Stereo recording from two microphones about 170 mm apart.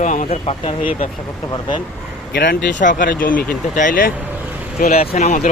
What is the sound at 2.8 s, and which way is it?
Speech, 50° left (ahead or behind).